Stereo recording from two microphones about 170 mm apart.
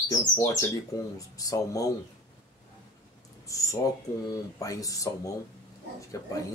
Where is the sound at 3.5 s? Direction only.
20° left (ahead or behind).